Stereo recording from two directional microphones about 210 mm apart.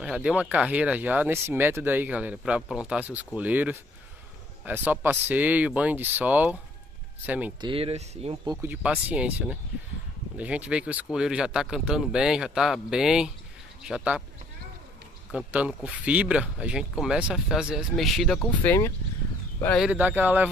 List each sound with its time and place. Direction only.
0.0 s speech: 5° right (ahead or behind)
7.6 s speech: 25° right (ahead or behind)
8.5 s speech: 5° right (ahead or behind)
15.3 s speech: 5° right (ahead or behind)
18.4 s speech: 10° left (ahead or behind)
19.9 s speech: 10° right (ahead or behind)